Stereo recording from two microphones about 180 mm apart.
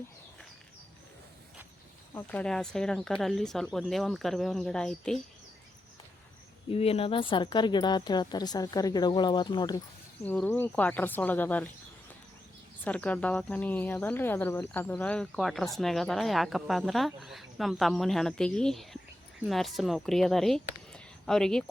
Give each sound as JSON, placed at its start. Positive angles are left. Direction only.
{"t": 2.1, "sound": "speech", "side_deg": 5}
{"t": 6.7, "sound": "speech", "side_deg": 35}
{"t": 10.2, "sound": "speech", "side_deg": 10}
{"t": 12.8, "sound": "speech", "side_deg": 10}
{"t": 20.9, "sound": "a sound", "side_deg": 5}